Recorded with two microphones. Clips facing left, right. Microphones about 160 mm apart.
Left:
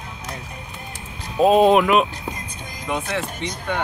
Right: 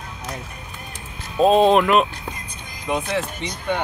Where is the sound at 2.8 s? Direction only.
15° right (ahead or behind).